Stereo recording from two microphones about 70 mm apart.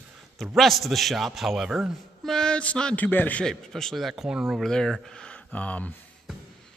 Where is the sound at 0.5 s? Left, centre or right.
Centre; by 3.4 s left.